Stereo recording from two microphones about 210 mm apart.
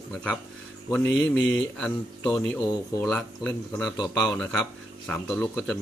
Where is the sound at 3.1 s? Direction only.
5° left (ahead or behind).